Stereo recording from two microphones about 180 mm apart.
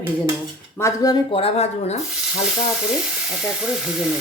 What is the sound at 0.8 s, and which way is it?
Speech, 20° left (ahead or behind).